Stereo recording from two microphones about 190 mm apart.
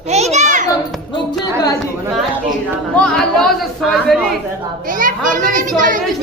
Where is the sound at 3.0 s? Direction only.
5° left (ahead or behind).